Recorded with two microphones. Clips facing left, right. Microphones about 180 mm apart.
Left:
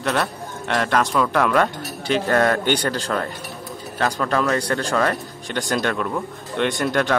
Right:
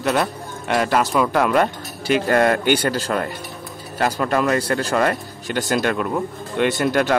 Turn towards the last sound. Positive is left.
turn(degrees=-5)  # may be behind; listen again after turning